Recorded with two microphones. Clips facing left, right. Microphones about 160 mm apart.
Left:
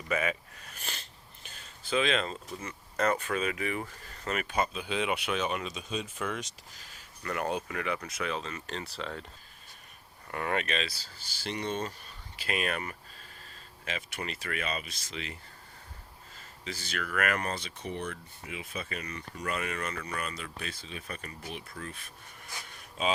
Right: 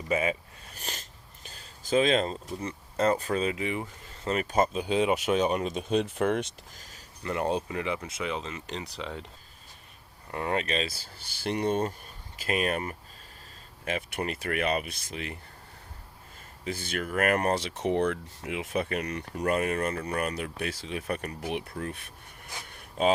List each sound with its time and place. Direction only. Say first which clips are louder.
0.1 s a sound: right 3 dB; 25° right (ahead or behind)
1.5 s speech: right 5 dB; 35° right (ahead or behind)
4.4 s speech: right 8 dB; 45° right (ahead or behind)
7.2 s speech: right 4 dB; 25° right (ahead or behind)
10.3 s speech: right 3 dB; 25° right (ahead or behind)
10.8 s speech: right 3 dB; 55° right (ahead or behind)
12.4 s speech: right 4 dB; 40° right (ahead or behind)
13.8 s speech: right 6 dB; 50° right (ahead or behind)
16.6 s speech: right 5 dB; 55° right (ahead or behind)
17.1 s speech: right 6 dB; 45° right (ahead or behind)
17.5 s speech: right 10 dB; 75° right (ahead or behind); by 20.0 s 45° right (ahead or behind)
20.1 s speech: right 7 dB; 55° right (ahead or behind)
21.8 s speech: right 7 dB; 55° right (ahead or behind)
22.7 s a sound: right 6 dB; 55° right (ahead or behind)